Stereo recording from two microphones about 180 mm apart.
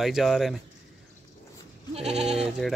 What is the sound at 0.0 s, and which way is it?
Speech, centre (ahead or behind).